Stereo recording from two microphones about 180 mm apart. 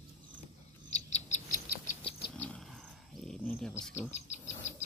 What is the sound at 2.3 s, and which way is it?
Cricket, 10° left (ahead or behind).